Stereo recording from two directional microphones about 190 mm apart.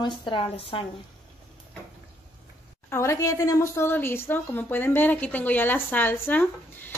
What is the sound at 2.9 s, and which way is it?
Speech, 15° left (ahead or behind).